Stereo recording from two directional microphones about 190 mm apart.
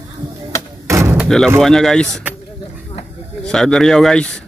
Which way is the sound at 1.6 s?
Centre (ahead or behind).